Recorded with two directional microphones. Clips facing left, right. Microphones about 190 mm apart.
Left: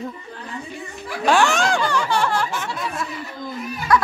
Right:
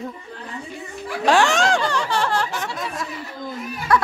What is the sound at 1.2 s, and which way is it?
Laughter, 30° right (ahead or behind).